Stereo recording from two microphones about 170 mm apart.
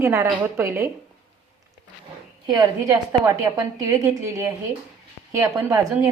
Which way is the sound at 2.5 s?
20° right (ahead or behind).